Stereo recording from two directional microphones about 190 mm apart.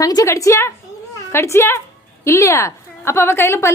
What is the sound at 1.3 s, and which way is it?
A woman's voice, 15° left (ahead or behind).